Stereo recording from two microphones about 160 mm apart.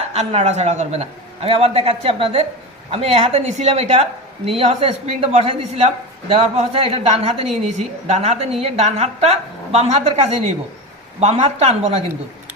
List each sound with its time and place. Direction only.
0.1 s a woman's voice: 40° right (ahead or behind)